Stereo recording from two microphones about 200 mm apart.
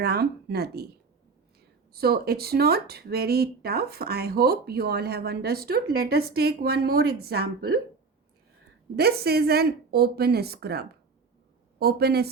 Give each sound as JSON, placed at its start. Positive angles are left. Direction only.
{"t": 0.0, "sound": "speech", "side_deg": -55}
{"t": 1.9, "sound": "speech", "side_deg": -50}
{"t": 9.0, "sound": "speech", "side_deg": -50}